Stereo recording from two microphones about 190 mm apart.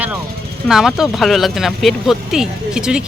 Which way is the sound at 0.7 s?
Centre (ahead or behind).